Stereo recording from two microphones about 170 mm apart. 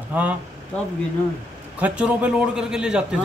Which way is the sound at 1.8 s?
5° right (ahead or behind).